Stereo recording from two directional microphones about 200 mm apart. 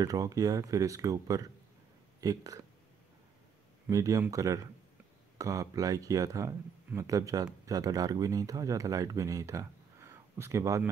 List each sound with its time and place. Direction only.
0.0 s speech: 15° right (ahead or behind)
3.9 s speech: 15° right (ahead or behind)